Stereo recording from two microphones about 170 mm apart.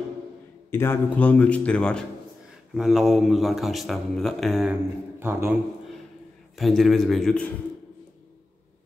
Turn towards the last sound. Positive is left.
turn(degrees=5)  # may be behind; listen again after turning